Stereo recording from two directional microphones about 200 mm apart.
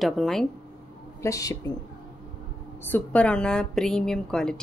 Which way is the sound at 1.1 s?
15° left (ahead or behind).